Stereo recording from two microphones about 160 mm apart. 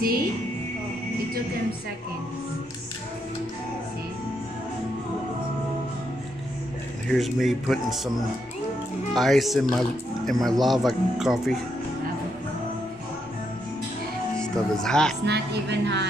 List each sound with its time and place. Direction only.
7.1 s speech: centre (ahead or behind)
9.1 s speech: centre (ahead or behind)
14.4 s speech: 5° left (ahead or behind)
15.2 s speech: 90° right